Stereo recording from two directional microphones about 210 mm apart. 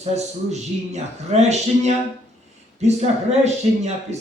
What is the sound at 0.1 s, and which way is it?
Speech, 30° right (ahead or behind).